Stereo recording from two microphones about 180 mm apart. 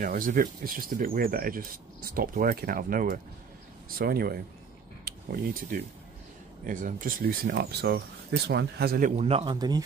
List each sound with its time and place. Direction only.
0.0 s speech: 50° right (ahead or behind)
9.1 s a man's voice: 35° right (ahead or behind)
9.6 s speech: 20° right (ahead or behind)